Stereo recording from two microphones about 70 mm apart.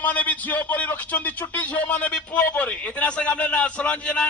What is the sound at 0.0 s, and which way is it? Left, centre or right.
A man's voice, left.